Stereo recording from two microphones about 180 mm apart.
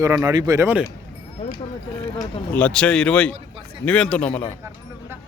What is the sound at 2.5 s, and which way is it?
A man's voice, 5° left (ahead or behind).